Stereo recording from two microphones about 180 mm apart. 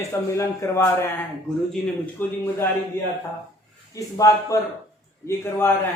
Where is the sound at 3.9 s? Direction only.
20° left (ahead or behind).